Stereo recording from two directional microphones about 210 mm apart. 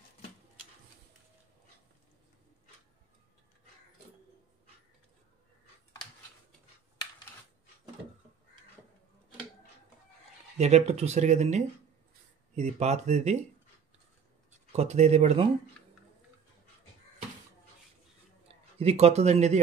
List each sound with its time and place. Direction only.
10.6 s speech: 30° right (ahead or behind)
14.7 s speech: 30° right (ahead or behind)
18.5 s speech: 30° right (ahead or behind)